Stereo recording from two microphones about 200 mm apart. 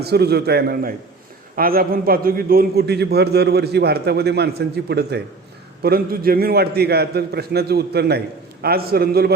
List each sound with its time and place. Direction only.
0.0 s a man's voice: 55° right (ahead or behind)